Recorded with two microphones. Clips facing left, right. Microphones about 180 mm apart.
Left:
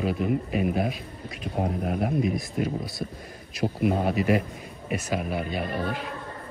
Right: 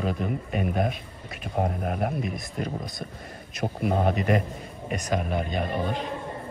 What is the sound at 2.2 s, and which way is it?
Speech, centre (ahead or behind).